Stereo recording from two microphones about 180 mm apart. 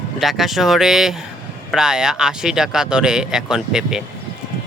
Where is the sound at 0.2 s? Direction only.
Centre (ahead or behind).